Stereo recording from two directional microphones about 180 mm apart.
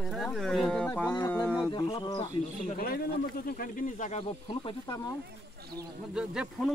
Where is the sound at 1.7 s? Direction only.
25° left (ahead or behind).